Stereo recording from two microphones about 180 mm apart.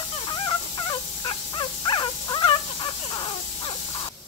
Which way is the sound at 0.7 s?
25° left (ahead or behind).